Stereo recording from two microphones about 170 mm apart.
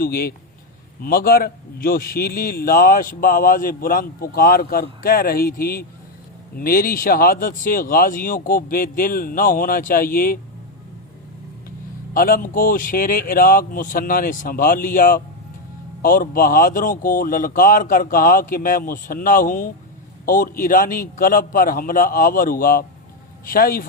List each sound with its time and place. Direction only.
0.0 s a man's voice: 60° left (ahead or behind)
12.1 s a man's voice: 55° left (ahead or behind)